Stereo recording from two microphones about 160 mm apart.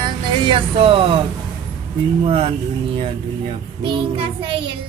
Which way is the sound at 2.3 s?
35° right (ahead or behind).